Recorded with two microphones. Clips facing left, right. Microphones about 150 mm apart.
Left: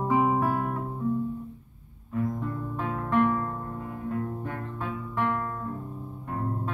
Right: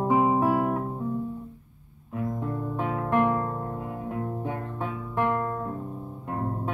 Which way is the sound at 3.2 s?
25° right (ahead or behind).